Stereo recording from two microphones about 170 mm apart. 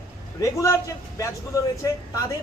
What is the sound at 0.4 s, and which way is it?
A man's voice, 15° left (ahead or behind).